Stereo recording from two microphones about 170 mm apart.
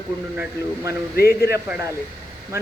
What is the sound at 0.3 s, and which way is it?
Speech, 15° right (ahead or behind).